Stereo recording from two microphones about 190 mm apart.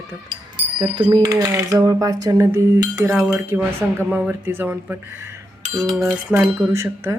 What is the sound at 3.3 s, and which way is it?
Speech, 15° right (ahead or behind).